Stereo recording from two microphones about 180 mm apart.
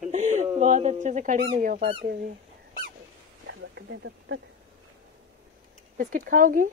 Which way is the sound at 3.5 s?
80° right.